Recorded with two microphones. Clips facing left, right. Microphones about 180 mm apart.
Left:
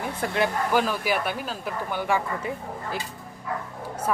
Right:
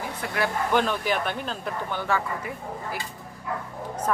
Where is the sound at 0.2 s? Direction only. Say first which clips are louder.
Left 6 dB; 40° left (ahead or behind).